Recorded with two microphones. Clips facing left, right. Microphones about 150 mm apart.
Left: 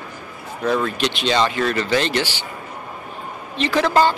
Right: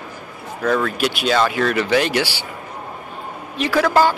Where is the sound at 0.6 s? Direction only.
10° left (ahead or behind).